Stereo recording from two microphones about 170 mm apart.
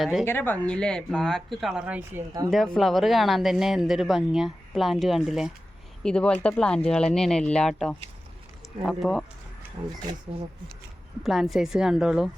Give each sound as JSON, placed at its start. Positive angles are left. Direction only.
{"t": 0.0, "sound": "speech", "side_deg": 0}
{"t": 0.3, "sound": "speech", "side_deg": 10}
{"t": 9.8, "sound": "speech", "side_deg": -30}
{"t": 11.2, "sound": "speech", "side_deg": 0}